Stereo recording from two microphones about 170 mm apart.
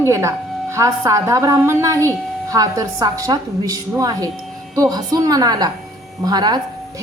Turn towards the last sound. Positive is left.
turn(degrees=-25)  # may be behind; listen again after turning